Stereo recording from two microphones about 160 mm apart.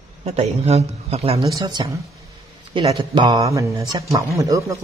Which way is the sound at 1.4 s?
25° right (ahead or behind).